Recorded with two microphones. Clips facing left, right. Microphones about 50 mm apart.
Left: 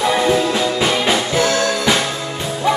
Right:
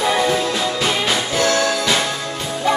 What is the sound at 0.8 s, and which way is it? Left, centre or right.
Music, centre.